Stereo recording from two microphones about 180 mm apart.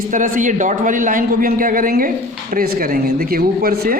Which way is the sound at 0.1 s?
45° right (ahead or behind).